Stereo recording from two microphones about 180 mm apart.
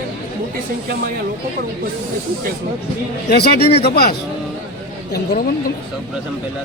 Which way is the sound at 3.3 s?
65° left (ahead or behind).